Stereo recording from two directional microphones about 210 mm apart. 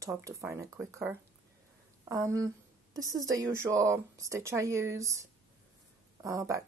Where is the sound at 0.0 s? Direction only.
15° right (ahead or behind).